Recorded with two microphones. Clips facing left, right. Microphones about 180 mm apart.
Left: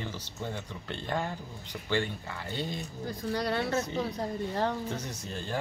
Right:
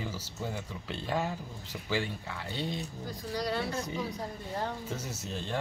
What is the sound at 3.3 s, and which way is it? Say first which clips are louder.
Speech: left 1 dB; 60° left (ahead or behind).